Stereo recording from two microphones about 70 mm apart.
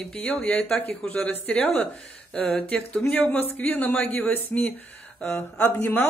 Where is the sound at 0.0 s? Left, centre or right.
Centre.